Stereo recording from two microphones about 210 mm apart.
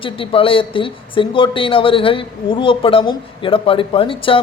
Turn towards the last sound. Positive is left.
turn(degrees=25)  # may be behind; listen again after turning